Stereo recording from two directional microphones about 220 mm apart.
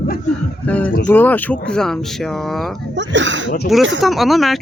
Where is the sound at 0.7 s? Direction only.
5° left (ahead or behind).